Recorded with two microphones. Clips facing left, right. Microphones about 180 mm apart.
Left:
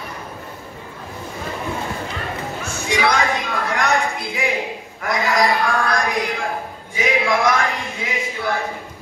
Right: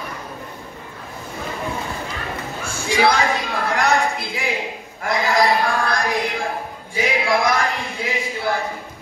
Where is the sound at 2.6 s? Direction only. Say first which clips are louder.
Right 3 dB; 30° right (ahead or behind).